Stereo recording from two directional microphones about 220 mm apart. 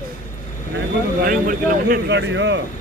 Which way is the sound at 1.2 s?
40° right (ahead or behind).